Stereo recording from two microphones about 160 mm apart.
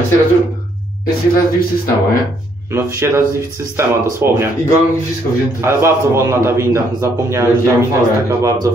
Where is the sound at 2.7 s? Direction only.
15° right (ahead or behind).